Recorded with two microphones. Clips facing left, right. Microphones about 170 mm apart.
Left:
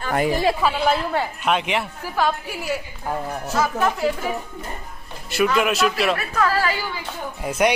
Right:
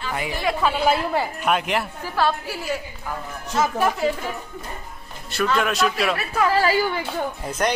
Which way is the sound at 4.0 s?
5° left (ahead or behind).